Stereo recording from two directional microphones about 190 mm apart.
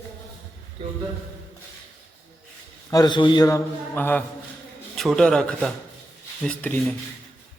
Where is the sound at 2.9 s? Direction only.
20° left (ahead or behind); by 6.9 s 5° left (ahead or behind).